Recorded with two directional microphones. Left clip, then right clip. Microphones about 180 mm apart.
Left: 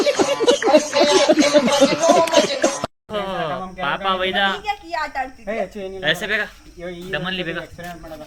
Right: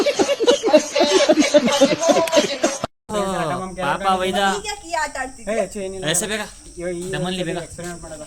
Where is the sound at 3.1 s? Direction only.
90° right.